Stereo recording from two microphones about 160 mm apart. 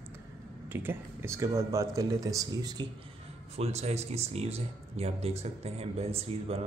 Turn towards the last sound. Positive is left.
turn(degrees=-40)  # may be behind; listen again after turning